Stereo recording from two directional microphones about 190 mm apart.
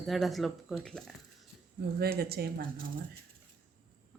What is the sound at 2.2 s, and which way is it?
Speech, 55° right (ahead or behind).